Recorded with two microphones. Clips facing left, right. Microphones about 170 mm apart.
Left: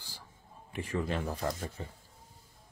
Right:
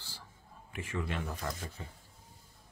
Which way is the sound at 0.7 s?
35° left (ahead or behind).